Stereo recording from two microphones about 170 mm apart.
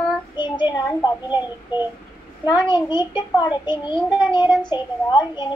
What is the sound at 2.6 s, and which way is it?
A child's voice, 25° left (ahead or behind).